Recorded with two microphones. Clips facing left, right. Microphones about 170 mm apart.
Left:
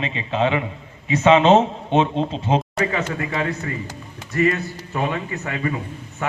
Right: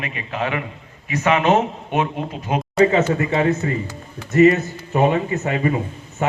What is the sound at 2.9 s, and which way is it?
Speech, 25° right (ahead or behind).